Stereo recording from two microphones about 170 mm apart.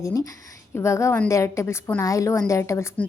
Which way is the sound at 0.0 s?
20° left (ahead or behind).